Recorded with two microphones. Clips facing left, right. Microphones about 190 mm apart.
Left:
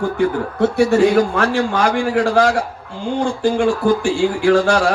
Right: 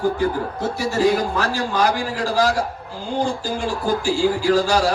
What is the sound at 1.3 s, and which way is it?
Speech, 55° left (ahead or behind).